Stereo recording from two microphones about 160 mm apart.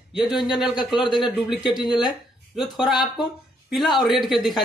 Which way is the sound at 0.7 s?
30° left (ahead or behind).